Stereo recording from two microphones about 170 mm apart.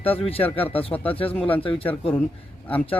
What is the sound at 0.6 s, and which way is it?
Speech, 35° left (ahead or behind).